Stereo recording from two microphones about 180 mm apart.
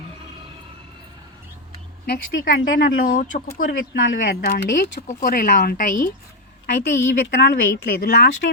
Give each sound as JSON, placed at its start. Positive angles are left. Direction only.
{"t": 2.0, "sound": "speech", "side_deg": 55}
{"t": 3.7, "sound": "speech", "side_deg": 75}
{"t": 4.2, "sound": "a woman's voice", "side_deg": 55}
{"t": 5.0, "sound": "speech", "side_deg": 50}
{"t": 6.7, "sound": "a woman's voice", "side_deg": 70}